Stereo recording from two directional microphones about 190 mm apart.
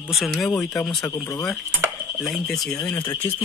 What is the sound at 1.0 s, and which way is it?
Speech, 15° left (ahead or behind).